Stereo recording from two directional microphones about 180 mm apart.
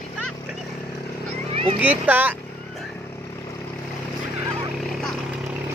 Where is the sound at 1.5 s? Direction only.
35° right (ahead or behind).